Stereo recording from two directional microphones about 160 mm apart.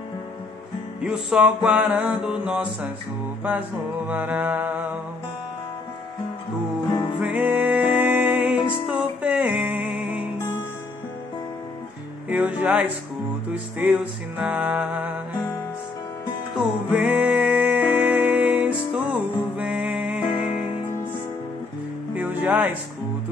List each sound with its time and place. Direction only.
1.0 s mantra: 5° right (ahead or behind)
3.4 s music: 10° right (ahead or behind)
6.9 s music: 30° left (ahead or behind)
7.2 s music: 10° right (ahead or behind)
12.3 s music: 10° right (ahead or behind)
16.5 s music: 5° right (ahead or behind)
20.4 s music: 30° left (ahead or behind)
22.1 s music: 10° right (ahead or behind)